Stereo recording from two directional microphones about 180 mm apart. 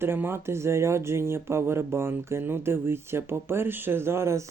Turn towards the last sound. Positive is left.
turn(degrees=-15)  # may be behind; listen again after turning